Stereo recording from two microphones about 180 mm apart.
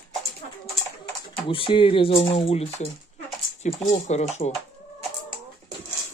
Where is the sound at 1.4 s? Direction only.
30° left (ahead or behind).